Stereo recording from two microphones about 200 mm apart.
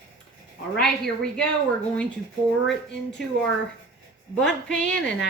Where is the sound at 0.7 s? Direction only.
5° left (ahead or behind).